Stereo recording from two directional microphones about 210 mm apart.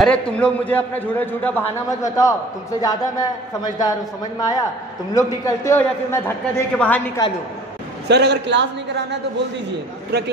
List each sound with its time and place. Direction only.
0.0 s a man's voice: 5° left (ahead or behind)
8.1 s a man's voice: 55° right (ahead or behind)